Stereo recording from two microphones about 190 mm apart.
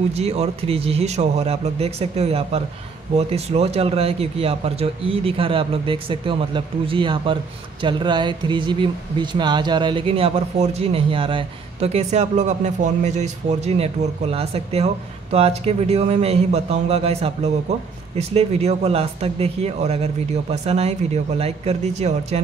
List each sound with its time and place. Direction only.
0.1 s speech: 35° right (ahead or behind)